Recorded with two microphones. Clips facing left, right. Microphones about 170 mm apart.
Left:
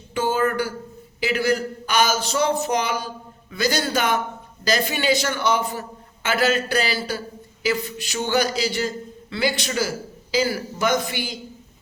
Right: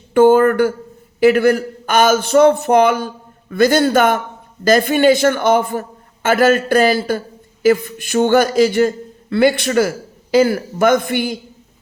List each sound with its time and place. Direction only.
0.1 s speech: 55° right (ahead or behind)